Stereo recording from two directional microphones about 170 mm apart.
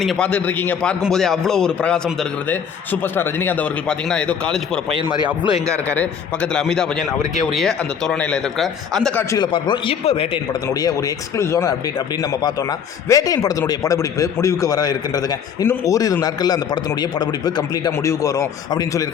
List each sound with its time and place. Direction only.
0.0 s a man's voice: 5° left (ahead or behind)
5.5 s a man's voice: 20° right (ahead or behind)
5.9 s a man's voice: 5° left (ahead or behind)
9.3 s a man's voice: 25° left (ahead or behind)